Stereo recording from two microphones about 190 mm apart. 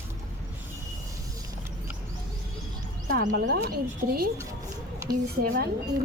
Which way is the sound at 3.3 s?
55° right (ahead or behind).